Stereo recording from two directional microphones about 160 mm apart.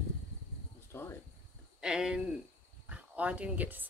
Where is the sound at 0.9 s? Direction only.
15° left (ahead or behind).